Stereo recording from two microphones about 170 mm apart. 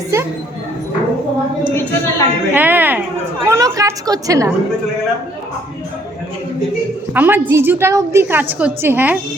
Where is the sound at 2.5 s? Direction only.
10° right (ahead or behind).